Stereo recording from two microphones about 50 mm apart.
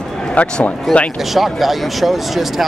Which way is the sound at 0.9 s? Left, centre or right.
Centre.